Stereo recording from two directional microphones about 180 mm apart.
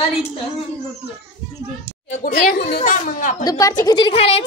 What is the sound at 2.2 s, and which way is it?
A child's voice, 55° left (ahead or behind).